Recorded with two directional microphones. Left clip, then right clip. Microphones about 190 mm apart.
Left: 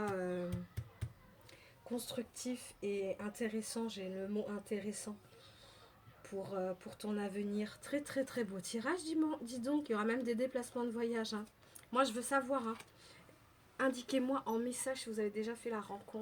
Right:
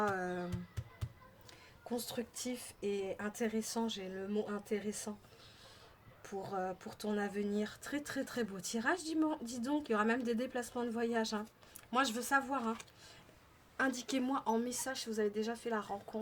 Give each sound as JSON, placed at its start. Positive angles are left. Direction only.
{"t": 0.1, "sound": "a sound", "side_deg": -25}
{"t": 1.9, "sound": "speech", "side_deg": -30}
{"t": 6.2, "sound": "speech", "side_deg": -30}
{"t": 13.7, "sound": "speech", "side_deg": -25}